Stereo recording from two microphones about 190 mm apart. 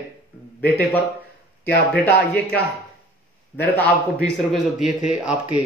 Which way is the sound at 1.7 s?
55° left (ahead or behind).